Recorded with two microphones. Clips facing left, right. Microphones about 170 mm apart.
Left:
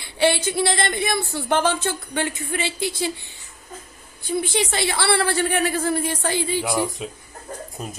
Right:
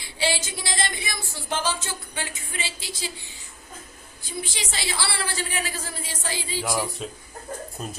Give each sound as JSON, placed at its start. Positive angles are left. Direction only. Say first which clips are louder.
{"t": 0.0, "sound": "a woman's voice", "louder": "left 7 dB", "side_deg": 60}
{"t": 4.2, "sound": "a woman's voice", "louder": "left 11 dB", "side_deg": 60}
{"t": 7.0, "sound": "speech", "louder": "left 2 dB", "side_deg": 5}